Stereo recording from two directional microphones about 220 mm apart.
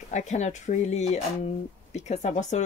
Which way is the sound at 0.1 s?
30° left (ahead or behind).